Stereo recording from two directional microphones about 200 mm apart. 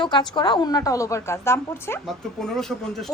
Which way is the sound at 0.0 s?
20° left (ahead or behind).